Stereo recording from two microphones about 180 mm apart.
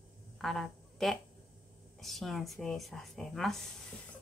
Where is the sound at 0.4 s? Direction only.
Centre (ahead or behind).